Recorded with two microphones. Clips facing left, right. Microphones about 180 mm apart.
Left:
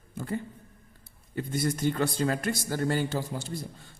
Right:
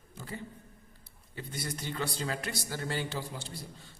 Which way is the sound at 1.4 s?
50° left (ahead or behind).